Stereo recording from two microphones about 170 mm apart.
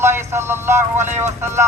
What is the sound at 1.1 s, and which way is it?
Speech, 40° right (ahead or behind).